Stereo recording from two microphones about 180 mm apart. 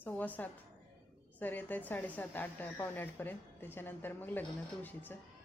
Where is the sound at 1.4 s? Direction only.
10° left (ahead or behind).